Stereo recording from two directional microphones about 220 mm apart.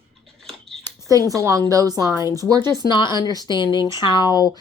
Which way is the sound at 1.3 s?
15° right (ahead or behind).